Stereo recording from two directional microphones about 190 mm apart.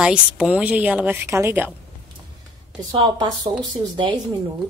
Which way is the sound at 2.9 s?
25° right (ahead or behind).